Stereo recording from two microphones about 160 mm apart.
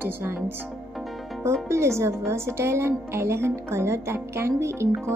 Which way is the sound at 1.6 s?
15° right (ahead or behind).